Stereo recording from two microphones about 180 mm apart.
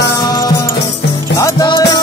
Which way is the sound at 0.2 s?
20° left (ahead or behind).